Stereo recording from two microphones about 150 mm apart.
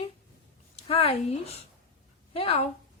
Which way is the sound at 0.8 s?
40° left (ahead or behind).